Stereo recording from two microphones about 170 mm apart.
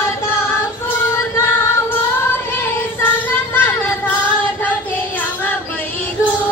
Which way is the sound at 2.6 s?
15° left (ahead or behind).